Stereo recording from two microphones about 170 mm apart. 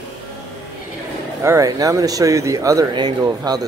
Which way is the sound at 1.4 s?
20° right (ahead or behind).